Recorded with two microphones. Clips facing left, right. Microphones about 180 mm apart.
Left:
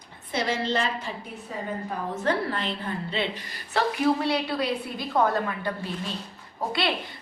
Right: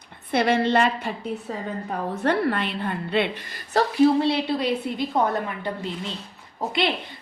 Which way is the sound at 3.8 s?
40° right (ahead or behind).